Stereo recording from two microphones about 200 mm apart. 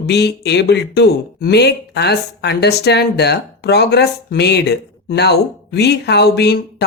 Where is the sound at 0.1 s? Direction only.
55° left (ahead or behind).